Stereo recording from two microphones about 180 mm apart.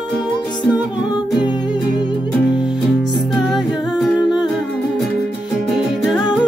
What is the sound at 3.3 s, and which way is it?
Music, centre (ahead or behind).